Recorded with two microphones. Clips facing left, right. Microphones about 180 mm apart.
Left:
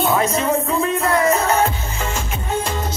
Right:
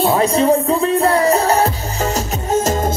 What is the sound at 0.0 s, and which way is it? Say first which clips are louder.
Music: right 4 dB; 35° right (ahead or behind).